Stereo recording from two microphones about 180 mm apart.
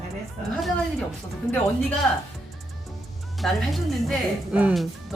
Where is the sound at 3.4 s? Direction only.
Centre (ahead or behind).